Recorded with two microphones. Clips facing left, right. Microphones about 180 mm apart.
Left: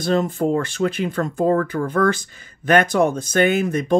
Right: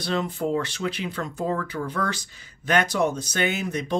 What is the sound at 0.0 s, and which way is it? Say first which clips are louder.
Speech: left 7 dB; 45° left (ahead or behind).